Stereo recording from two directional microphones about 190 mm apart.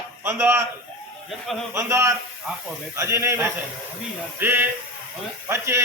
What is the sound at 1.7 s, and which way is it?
A man's voice, 15° right (ahead or behind).